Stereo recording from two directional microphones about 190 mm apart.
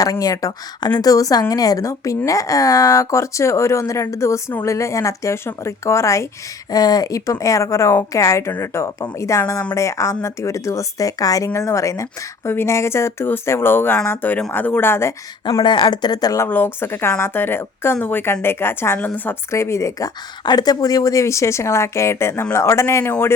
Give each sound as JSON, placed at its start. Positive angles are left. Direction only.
{"t": 0.0, "sound": "speech", "side_deg": 20}